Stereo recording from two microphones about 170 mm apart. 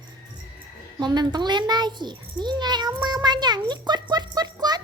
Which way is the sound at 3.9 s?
25° right (ahead or behind).